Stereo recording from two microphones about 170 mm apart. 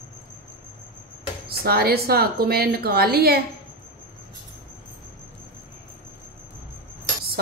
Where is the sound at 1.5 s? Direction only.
65° right (ahead or behind).